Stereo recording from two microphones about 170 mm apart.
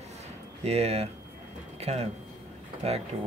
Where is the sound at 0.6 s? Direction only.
35° right (ahead or behind).